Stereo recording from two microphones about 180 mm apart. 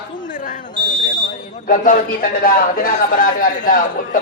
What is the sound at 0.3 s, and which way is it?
Fire alarm, 45° left (ahead or behind).